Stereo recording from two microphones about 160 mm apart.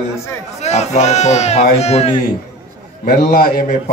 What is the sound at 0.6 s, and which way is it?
Speech, 45° left (ahead or behind).